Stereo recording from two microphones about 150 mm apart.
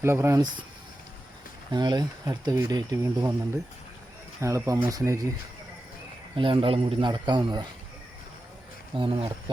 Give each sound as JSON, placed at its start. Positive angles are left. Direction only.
{"t": 0.0, "sound": "speech", "side_deg": -15}
{"t": 1.7, "sound": "speech", "side_deg": -25}
{"t": 4.4, "sound": "speech", "side_deg": -20}
{"t": 6.3, "sound": "a man's voice", "side_deg": -35}
{"t": 9.0, "sound": "a man's voice", "side_deg": -35}